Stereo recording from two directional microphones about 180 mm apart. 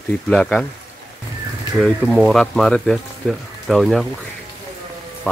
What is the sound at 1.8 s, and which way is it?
Speech, centre (ahead or behind).